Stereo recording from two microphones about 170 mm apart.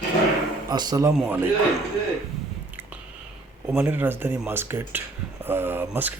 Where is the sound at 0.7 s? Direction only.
25° right (ahead or behind).